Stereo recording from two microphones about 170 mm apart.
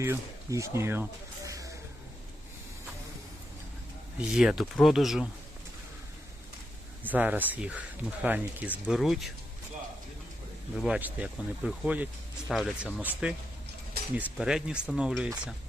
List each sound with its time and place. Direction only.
0.0 s speech: 15° right (ahead or behind)
1.5 s a sound: 20° right (ahead or behind)
4.2 s speech: 5° right (ahead or behind)
7.0 s speech: 10° right (ahead or behind)
10.8 s speech: 5° right (ahead or behind)
14.3 s speech: 5° right (ahead or behind)